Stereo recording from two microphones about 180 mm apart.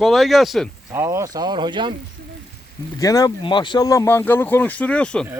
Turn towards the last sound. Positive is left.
turn(degrees=5)  # may be behind; listen again after turning